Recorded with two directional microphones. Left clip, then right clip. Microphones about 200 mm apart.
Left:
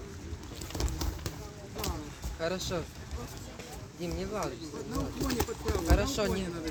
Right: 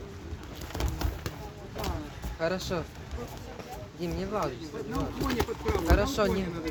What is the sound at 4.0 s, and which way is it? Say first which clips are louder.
Speech: right 4 dB; 50° right (ahead or behind).